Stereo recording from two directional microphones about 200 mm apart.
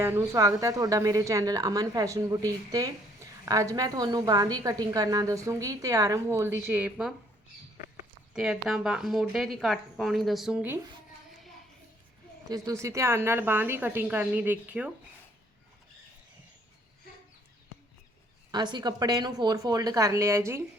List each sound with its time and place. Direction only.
0.0 s a woman's voice: 15° right (ahead or behind)
8.3 s a woman's voice: 5° right (ahead or behind)
12.5 s a woman's voice: 15° right (ahead or behind)
18.5 s a woman's voice: 20° right (ahead or behind)